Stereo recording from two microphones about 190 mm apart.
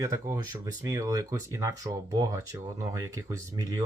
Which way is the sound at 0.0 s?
20° right (ahead or behind).